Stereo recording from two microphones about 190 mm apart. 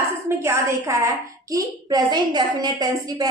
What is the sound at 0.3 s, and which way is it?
A woman's voice, 15° right (ahead or behind).